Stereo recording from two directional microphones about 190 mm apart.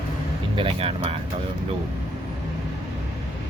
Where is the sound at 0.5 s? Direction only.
30° right (ahead or behind).